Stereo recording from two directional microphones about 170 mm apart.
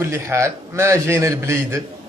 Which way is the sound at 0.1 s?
15° right (ahead or behind).